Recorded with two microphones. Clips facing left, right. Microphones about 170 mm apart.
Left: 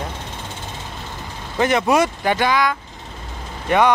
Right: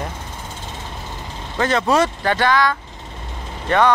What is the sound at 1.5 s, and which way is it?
Speech, 15° left (ahead or behind).